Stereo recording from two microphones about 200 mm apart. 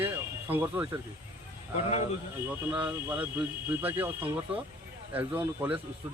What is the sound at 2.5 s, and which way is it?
Speech, 10° right (ahead or behind).